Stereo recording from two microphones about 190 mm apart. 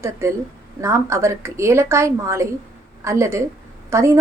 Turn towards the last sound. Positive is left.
turn(degrees=-15)  # may be behind; listen again after turning